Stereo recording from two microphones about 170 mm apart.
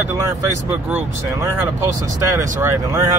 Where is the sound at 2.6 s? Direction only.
20° right (ahead or behind).